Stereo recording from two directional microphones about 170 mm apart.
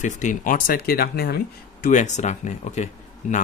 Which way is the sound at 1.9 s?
45° left (ahead or behind).